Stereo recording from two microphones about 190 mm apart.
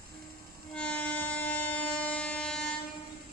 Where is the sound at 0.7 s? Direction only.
5° left (ahead or behind).